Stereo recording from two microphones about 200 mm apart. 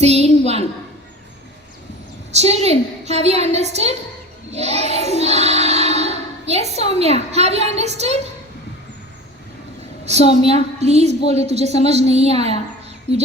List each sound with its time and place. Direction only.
0.0 s a sound: 30° right (ahead or behind)
2.3 s a woman's voice: 30° right (ahead or behind)
4.5 s child singing: 30° right (ahead or behind)
10.1 s a woman's voice: 30° right (ahead or behind)